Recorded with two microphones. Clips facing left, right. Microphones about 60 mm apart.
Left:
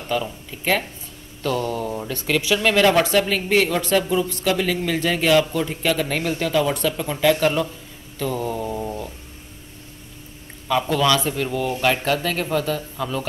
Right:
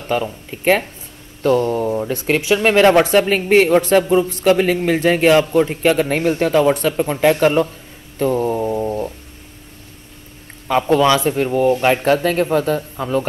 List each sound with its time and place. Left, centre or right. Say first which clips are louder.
0.2 s a man's voice: right 6 dB; right
8.2 s a sound: right 7 dB; right
10.7 s a man's voice: right 5 dB; right